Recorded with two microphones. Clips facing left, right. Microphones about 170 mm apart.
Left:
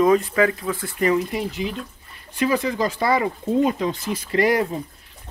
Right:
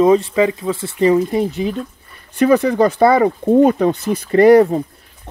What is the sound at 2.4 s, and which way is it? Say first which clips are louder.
Speech: right 9 dB; 60° right (ahead or behind).